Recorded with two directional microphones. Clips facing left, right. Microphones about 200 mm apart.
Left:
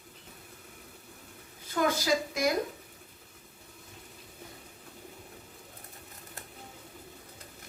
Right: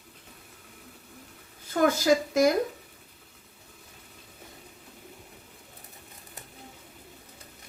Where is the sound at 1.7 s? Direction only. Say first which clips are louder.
Right 5 dB; 45° right (ahead or behind).